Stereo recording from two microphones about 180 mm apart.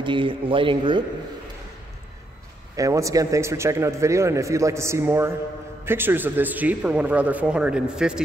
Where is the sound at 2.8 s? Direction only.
15° right (ahead or behind).